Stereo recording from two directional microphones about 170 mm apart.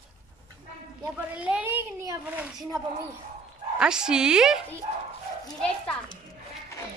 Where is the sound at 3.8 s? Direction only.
5° right (ahead or behind).